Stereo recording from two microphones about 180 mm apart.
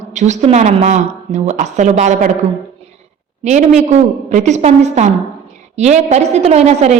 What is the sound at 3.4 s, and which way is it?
A woman's voice, 40° right (ahead or behind).